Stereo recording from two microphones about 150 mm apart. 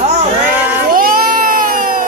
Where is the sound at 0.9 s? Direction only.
75° right (ahead or behind).